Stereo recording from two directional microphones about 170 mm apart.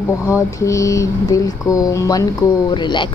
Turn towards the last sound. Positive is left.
turn(degrees=30)  # may be behind; listen again after turning